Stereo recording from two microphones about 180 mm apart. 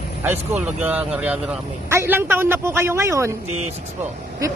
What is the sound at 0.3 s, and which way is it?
Speech, 10° right (ahead or behind).